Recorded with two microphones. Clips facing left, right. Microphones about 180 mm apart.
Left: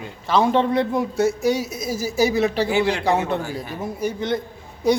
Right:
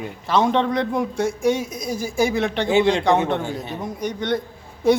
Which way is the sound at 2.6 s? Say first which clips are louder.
Right 3 dB; 20° right (ahead or behind).